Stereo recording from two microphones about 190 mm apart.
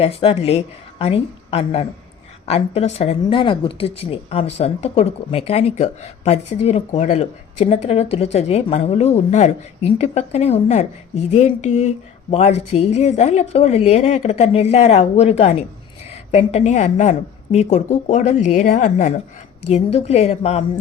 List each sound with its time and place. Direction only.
0.0 s a woman's voice: 30° left (ahead or behind)